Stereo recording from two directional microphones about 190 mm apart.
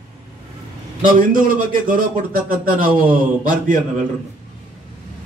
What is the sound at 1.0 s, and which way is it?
A man's voice, 45° right (ahead or behind).